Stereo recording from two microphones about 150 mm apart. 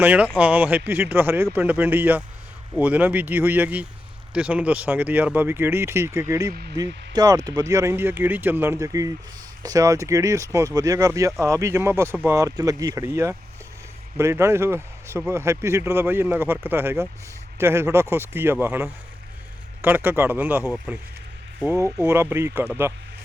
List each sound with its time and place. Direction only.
0.0 s speech: 10° right (ahead or behind)
6.5 s speech: 90° right
6.7 s speech: 25° right (ahead or behind); by 21.0 s 10° right (ahead or behind)
22.0 s speech: 15° right (ahead or behind)